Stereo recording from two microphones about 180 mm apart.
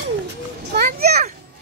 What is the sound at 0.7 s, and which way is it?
Children playing, 60° right (ahead or behind).